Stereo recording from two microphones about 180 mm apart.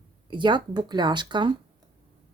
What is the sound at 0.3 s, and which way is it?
Speech, 25° right (ahead or behind).